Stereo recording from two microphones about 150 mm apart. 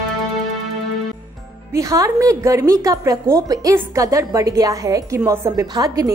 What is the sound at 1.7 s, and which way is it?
A woman's voice, 20° right (ahead or behind).